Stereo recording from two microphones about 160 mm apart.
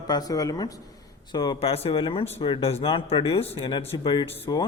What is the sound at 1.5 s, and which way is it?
Speech, 40° left (ahead or behind).